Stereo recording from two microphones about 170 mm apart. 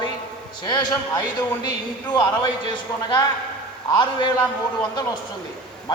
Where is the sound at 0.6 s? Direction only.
25° left (ahead or behind).